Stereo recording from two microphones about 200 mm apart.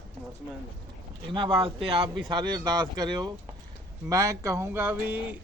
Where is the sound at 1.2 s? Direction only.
25° right (ahead or behind); by 5.2 s 10° right (ahead or behind).